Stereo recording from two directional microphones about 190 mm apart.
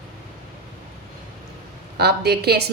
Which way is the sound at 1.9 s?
60° right (ahead or behind).